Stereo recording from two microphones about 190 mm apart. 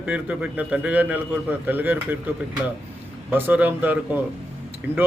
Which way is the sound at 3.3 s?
10° right (ahead or behind).